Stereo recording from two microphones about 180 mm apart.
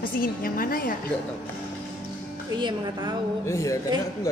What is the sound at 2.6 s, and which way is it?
Speech, 25° right (ahead or behind).